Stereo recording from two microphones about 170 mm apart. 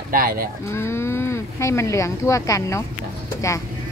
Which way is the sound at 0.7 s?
15° left (ahead or behind).